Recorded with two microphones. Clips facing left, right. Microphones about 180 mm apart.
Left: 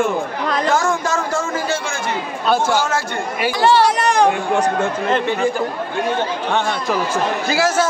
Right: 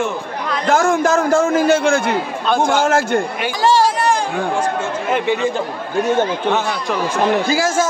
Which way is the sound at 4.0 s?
70° left (ahead or behind).